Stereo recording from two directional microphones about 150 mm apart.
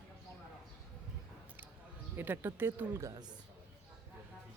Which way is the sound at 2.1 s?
15° right (ahead or behind).